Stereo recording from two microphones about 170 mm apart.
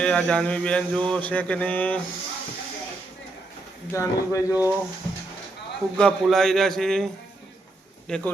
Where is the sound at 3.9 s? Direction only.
20° left (ahead or behind).